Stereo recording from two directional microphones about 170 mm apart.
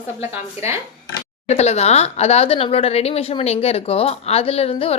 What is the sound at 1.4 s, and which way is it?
Speech, 40° left (ahead or behind).